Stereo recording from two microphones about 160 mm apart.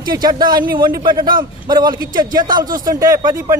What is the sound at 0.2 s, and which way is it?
A man's voice, 25° right (ahead or behind).